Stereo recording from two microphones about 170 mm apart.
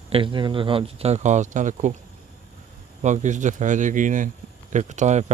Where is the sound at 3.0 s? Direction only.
45° right (ahead or behind).